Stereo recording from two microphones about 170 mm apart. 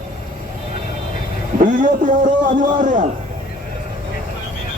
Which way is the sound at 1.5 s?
50° right (ahead or behind).